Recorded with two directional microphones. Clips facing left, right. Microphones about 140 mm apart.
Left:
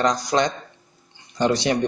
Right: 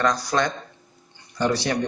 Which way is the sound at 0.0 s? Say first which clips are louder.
Left 2 dB; 20° left (ahead or behind).